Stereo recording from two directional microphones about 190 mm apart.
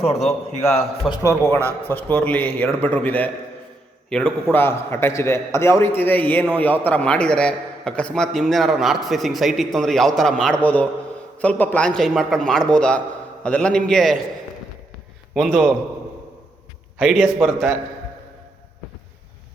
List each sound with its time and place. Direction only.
0.0 s a man's voice: 35° left (ahead or behind)
1.1 s a man's voice: 15° left (ahead or behind)
15.4 s a man's voice: centre (ahead or behind)
17.0 s a man's voice: centre (ahead or behind)